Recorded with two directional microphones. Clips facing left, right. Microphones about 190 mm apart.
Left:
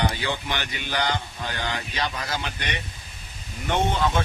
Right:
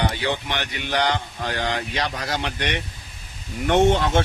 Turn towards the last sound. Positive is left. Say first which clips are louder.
# right 7 dB
turn(degrees=-80)